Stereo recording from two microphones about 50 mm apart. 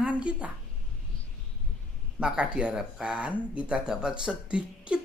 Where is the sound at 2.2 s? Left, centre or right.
Right.